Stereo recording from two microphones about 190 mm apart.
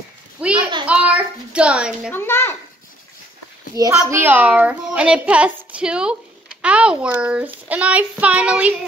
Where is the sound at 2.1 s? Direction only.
10° left (ahead or behind).